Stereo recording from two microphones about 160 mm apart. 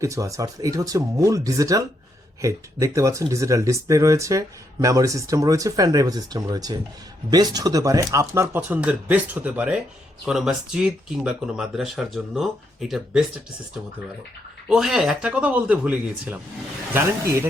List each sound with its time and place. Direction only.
0.0 s speech: 20° right (ahead or behind); by 13.2 s centre (ahead or behind)
14.7 s speech: centre (ahead or behind)